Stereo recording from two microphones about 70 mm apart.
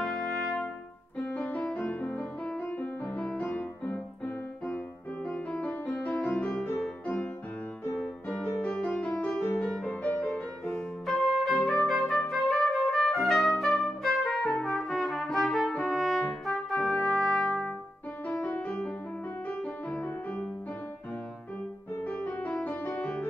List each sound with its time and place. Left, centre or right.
0.0 s brass instrument: centre
1.2 s music: left
5.2 s music: centre
6.4 s music: centre
8.8 s music: left
11.1 s music: centre
15.3 s trumpet: centre
18.4 s music: left